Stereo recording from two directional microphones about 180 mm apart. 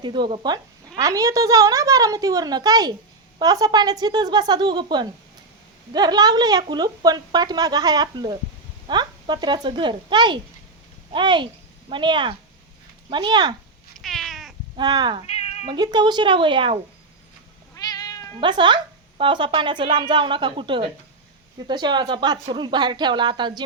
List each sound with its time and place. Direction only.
0.0 s a woman's voice: 25° right (ahead or behind)
14.0 s cat: centre (ahead or behind)
14.8 s a woman's voice: 25° right (ahead or behind)
17.7 s cat: 20° left (ahead or behind)
18.3 s a woman's voice: 25° right (ahead or behind)